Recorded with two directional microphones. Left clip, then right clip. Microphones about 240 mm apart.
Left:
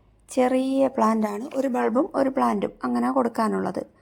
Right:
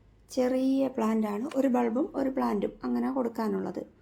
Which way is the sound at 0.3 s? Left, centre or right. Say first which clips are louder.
Left 5 dB; left.